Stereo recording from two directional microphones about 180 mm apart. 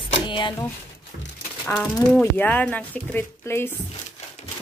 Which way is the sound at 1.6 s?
5° left (ahead or behind).